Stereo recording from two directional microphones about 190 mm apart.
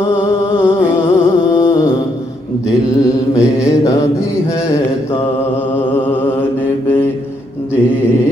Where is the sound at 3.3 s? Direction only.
15° left (ahead or behind).